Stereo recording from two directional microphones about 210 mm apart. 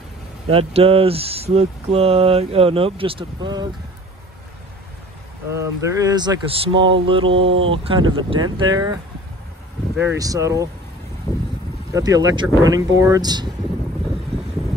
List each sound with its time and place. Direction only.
0.5 s speech: 25° right (ahead or behind)
5.5 s speech: 15° right (ahead or behind)
9.9 s speech: 15° right (ahead or behind)
11.9 s speech: 15° right (ahead or behind)